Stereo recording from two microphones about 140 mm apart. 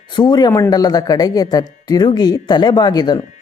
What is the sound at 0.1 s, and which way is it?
Speech, 30° left (ahead or behind).